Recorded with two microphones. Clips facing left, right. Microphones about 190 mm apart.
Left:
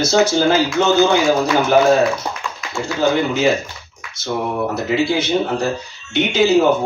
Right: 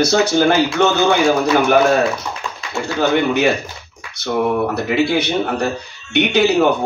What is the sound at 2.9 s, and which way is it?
A man's voice, 65° right (ahead or behind).